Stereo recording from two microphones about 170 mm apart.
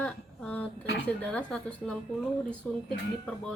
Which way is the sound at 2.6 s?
10° left (ahead or behind).